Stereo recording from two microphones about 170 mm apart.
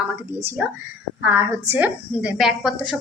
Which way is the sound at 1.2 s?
15° right (ahead or behind).